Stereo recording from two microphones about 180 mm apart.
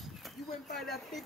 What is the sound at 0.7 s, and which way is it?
Speech, centre (ahead or behind).